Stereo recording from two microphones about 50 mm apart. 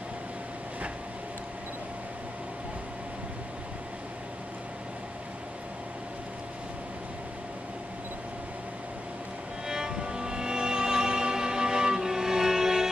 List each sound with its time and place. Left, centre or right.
9.7 s music: centre